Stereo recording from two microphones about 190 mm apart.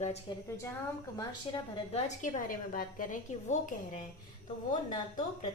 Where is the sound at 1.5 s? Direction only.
25° left (ahead or behind).